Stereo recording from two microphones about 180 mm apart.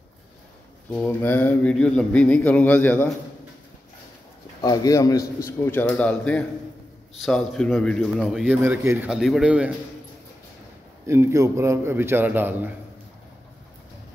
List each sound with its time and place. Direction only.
0.9 s speech: 10° left (ahead or behind)
4.6 s speech: 20° left (ahead or behind); by 8.5 s centre (ahead or behind)
8.6 s a man's voice: 15° right (ahead or behind)
9.1 s speech: 5° right (ahead or behind)
11.1 s a man's voice: 15° right (ahead or behind)